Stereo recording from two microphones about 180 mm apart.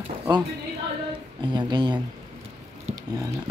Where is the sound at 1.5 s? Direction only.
25° right (ahead or behind).